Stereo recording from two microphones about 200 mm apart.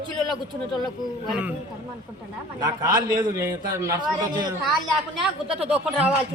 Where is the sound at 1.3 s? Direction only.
5° right (ahead or behind).